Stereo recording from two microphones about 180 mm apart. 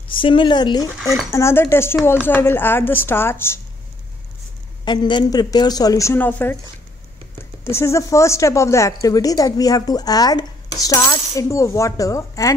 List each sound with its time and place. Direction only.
0.2 s speech: 25° left (ahead or behind)
1.3 s a woman's voice: 15° left (ahead or behind)
4.8 s speech: 25° left (ahead or behind)
7.6 s a woman's voice: 15° left (ahead or behind)